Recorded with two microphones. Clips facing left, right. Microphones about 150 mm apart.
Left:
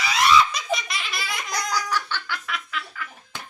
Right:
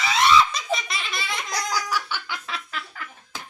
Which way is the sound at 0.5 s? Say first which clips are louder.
Even; centre (ahead or behind).